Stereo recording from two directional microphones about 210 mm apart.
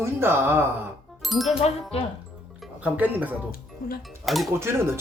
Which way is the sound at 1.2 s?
Centre (ahead or behind).